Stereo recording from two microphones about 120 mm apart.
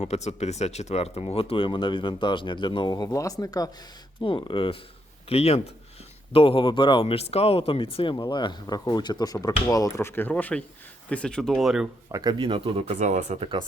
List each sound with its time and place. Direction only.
0.0 s speech: 65° left (ahead or behind); by 3.7 s 30° left (ahead or behind)
4.2 s speech: 45° left (ahead or behind)
5.3 s a man's voice: 60° left (ahead or behind)
8.1 s speech: 35° left (ahead or behind); by 11.5 s 5° left (ahead or behind)
11.5 s speech: 5° right (ahead or behind)
12.1 s speech: 35° right (ahead or behind)
12.4 s speech: 50° right (ahead or behind)
13.0 s speech: 80° right